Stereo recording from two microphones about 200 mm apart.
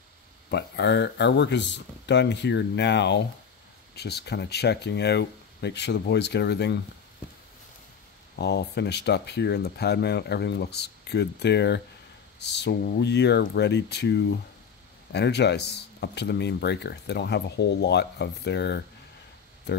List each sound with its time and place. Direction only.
0.5 s speech: 60° left (ahead or behind)
8.4 s speech: 60° left (ahead or behind)